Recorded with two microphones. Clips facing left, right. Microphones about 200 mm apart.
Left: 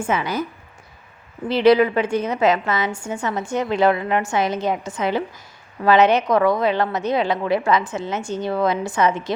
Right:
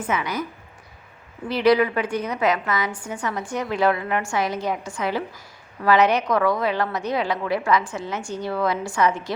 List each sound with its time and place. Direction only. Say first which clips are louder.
0.0 s a woman's voice: left 3 dB; 30° left (ahead or behind)
1.5 s a woman's voice: left 4 dB; 25° left (ahead or behind)